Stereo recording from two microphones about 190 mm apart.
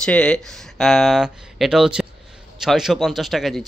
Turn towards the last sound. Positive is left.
turn(degrees=0)  # may be behind; listen again after turning